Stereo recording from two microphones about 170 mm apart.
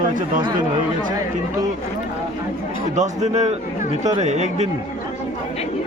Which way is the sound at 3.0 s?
40° right (ahead or behind).